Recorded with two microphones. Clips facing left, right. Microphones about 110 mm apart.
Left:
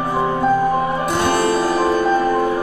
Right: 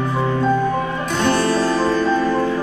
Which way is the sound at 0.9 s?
15° left (ahead or behind).